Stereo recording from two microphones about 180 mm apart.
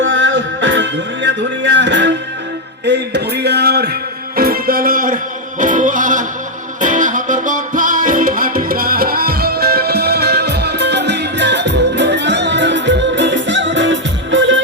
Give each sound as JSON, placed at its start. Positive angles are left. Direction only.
{"t": 0.0, "sound": "music", "side_deg": -90}
{"t": 2.8, "sound": "music", "side_deg": -70}